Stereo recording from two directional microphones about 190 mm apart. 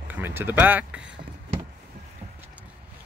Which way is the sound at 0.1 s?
10° right (ahead or behind).